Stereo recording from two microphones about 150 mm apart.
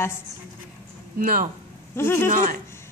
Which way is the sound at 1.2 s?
65° right (ahead or behind).